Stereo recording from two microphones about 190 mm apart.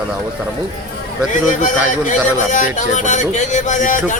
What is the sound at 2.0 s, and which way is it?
A man's voice, 40° left (ahead or behind).